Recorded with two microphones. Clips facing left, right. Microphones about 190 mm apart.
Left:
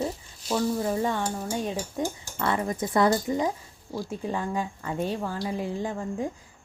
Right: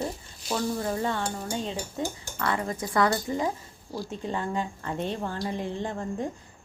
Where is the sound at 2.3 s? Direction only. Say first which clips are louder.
Left 2 dB; 20° left (ahead or behind).